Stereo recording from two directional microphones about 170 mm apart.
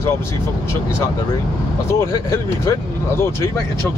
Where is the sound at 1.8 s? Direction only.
15° left (ahead or behind).